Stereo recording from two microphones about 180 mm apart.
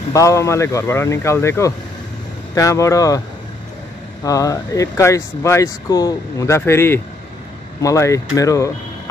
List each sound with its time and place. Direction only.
0.1 s speech: 20° left (ahead or behind)
4.2 s speech: 20° left (ahead or behind)